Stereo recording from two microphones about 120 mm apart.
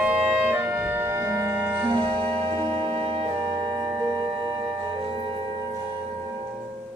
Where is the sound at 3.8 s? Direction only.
30° right (ahead or behind).